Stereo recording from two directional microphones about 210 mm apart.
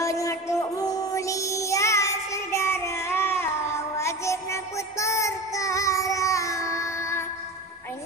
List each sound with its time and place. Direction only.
0.0 s music: 15° left (ahead or behind)